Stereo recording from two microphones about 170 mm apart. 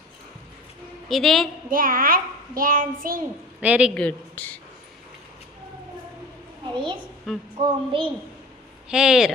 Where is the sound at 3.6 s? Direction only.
10° right (ahead or behind).